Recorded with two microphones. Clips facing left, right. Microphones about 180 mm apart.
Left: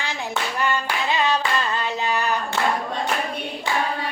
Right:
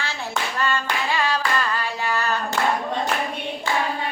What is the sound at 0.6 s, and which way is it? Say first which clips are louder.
Clapping: even; 20° left (ahead or behind).